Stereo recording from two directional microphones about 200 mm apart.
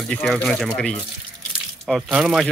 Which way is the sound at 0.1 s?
5° left (ahead or behind).